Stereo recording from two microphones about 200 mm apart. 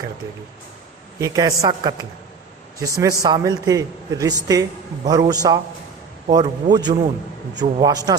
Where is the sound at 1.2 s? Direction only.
15° right (ahead or behind).